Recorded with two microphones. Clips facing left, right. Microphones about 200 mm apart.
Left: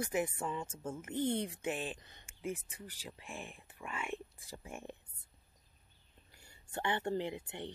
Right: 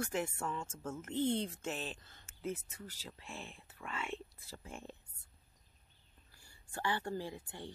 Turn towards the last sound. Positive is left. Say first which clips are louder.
# left 4 dB
turn(degrees=20)  # may be behind; listen again after turning